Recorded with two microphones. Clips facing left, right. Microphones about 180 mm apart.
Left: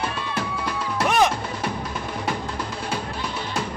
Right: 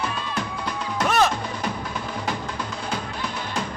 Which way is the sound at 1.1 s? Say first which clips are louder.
Left 1 dB; 15° left (ahead or behind).